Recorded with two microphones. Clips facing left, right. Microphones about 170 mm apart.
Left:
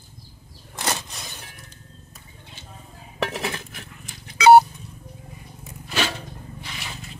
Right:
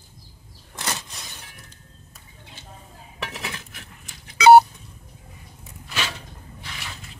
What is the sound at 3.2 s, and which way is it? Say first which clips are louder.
Cutlery: left 5 dB; 40° left (ahead or behind).